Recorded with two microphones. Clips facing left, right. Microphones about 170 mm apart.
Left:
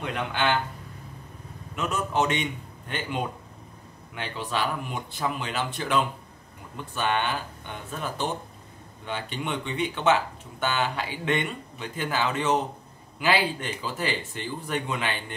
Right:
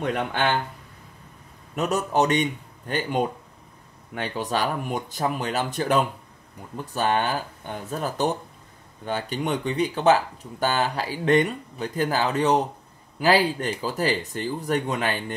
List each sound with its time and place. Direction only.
0.0 s speech: 50° right (ahead or behind)
1.8 s speech: 40° right (ahead or behind)